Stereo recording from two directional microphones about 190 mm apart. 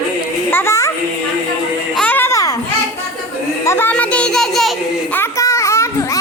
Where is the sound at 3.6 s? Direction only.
10° left (ahead or behind).